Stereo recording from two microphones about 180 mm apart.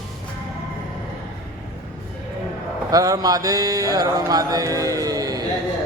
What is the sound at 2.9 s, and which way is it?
Speech, 20° right (ahead or behind).